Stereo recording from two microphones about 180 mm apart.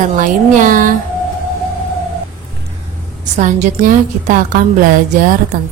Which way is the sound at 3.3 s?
45° right (ahead or behind).